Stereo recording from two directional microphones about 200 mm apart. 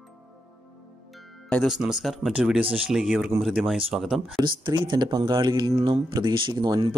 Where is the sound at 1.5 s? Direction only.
Centre (ahead or behind).